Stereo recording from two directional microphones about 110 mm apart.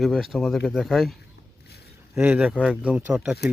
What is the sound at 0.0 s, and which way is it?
Speech, centre (ahead or behind).